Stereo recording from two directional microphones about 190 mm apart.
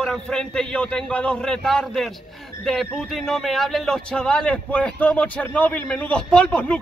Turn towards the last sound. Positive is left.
turn(degrees=5)  # may be behind; listen again after turning